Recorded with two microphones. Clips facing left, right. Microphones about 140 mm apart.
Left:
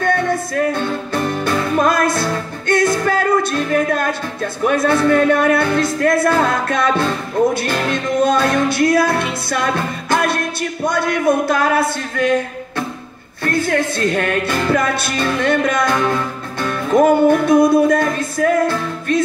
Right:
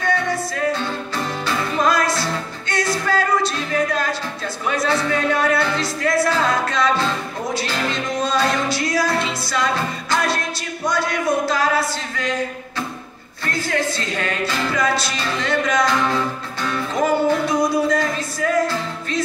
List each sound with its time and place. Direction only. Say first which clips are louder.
0.0 s music: left 4 dB; 55° left (ahead or behind)
10.9 s a sound: left 4 dB; 55° left (ahead or behind)
13.5 s music: left 5 dB; 55° left (ahead or behind)